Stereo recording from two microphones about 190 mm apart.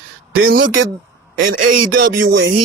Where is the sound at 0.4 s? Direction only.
65° right (ahead or behind).